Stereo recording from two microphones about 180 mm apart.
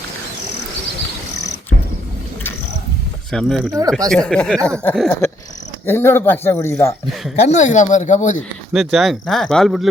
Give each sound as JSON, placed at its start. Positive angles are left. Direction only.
{"t": 3.3, "sound": "speech", "side_deg": 0}
{"t": 7.4, "sound": "speech", "side_deg": 40}
{"t": 8.7, "sound": "speech", "side_deg": 0}